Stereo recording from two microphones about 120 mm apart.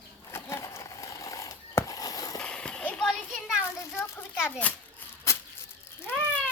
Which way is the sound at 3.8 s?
20° left (ahead or behind).